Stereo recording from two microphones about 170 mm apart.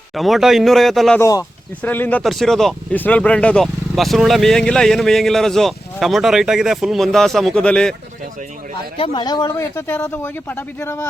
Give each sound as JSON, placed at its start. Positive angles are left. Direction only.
{"t": 0.1, "sound": "speech", "side_deg": 0}
{"t": 1.2, "sound": "speech", "side_deg": 20}
{"t": 9.0, "sound": "speech", "side_deg": 25}